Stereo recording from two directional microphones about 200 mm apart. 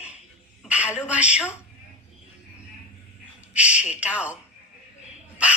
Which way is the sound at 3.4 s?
5° right (ahead or behind).